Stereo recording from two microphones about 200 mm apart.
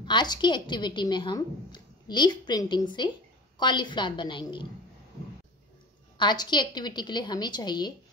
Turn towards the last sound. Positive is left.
turn(degrees=20)  # may be behind; listen again after turning